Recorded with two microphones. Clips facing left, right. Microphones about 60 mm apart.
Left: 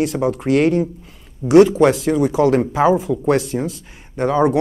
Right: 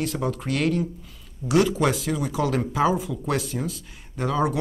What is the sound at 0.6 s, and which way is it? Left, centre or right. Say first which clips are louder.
Speech: left 8 dB; left.